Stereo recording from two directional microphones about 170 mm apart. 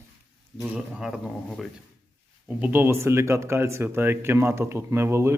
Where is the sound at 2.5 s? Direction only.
10° right (ahead or behind).